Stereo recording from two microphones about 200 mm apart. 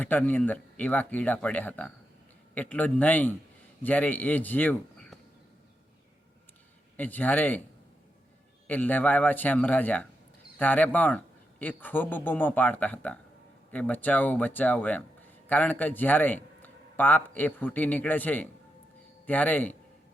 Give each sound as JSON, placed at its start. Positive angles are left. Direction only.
{"t": 0.0, "sound": "a man's voice", "side_deg": 10}
{"t": 6.9, "sound": "speech", "side_deg": 10}
{"t": 8.6, "sound": "speech", "side_deg": 10}